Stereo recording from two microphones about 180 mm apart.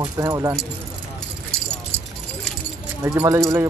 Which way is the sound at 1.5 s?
5° left (ahead or behind).